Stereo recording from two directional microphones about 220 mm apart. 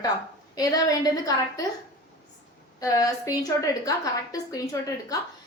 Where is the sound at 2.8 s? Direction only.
15° left (ahead or behind).